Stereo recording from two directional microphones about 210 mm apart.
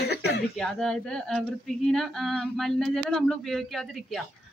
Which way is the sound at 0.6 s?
Centre (ahead or behind).